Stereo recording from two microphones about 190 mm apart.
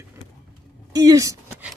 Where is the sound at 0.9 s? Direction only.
20° right (ahead or behind).